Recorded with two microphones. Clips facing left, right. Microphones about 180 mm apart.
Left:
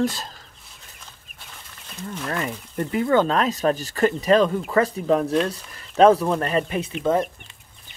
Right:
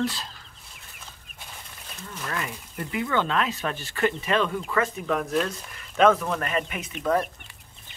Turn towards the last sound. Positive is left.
turn(degrees=25)  # may be behind; listen again after turning